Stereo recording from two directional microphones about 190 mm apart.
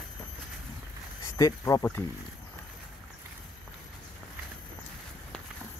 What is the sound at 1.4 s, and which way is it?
Speech, 20° left (ahead or behind).